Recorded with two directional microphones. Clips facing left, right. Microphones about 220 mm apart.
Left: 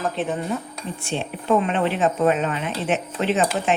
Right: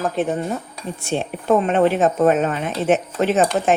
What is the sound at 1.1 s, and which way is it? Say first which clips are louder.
Speech: right 3 dB; 45° right (ahead or behind).